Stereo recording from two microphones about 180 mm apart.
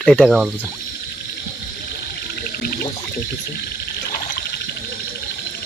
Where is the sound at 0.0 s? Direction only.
5° left (ahead or behind).